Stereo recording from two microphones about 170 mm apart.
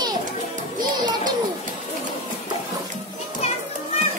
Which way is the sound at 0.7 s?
25° right (ahead or behind).